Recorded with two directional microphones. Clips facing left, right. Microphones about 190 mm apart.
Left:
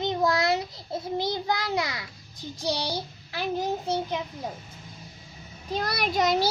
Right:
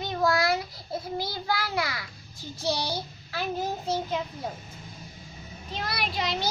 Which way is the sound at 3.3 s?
15° left (ahead or behind).